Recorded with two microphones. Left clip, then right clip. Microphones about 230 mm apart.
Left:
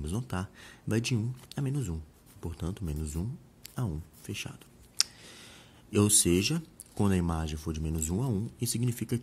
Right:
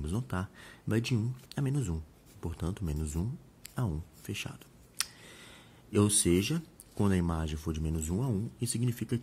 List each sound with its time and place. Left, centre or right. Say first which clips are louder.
0.0 s speech: even; centre